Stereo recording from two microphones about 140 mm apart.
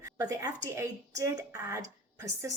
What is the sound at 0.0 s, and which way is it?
Speech, 25° right (ahead or behind).